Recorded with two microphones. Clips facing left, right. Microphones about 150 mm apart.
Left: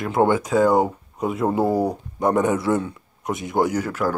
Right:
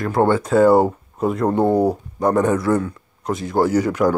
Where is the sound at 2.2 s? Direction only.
20° left (ahead or behind).